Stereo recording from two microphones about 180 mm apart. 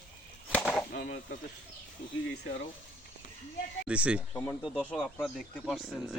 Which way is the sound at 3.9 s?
5° right (ahead or behind).